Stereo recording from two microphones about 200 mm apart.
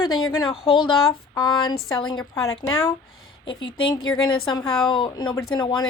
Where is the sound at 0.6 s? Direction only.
25° left (ahead or behind).